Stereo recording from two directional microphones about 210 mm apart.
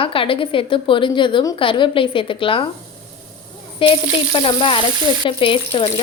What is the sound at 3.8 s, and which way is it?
A woman's voice, 25° left (ahead or behind).